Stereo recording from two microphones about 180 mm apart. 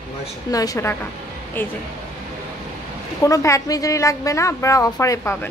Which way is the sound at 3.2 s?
15° left (ahead or behind).